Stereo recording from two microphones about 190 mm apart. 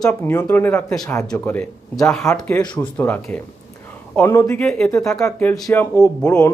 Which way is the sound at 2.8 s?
10° left (ahead or behind).